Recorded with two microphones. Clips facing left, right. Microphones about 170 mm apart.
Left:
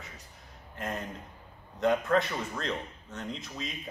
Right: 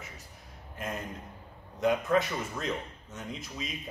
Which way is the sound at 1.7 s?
5° right (ahead or behind).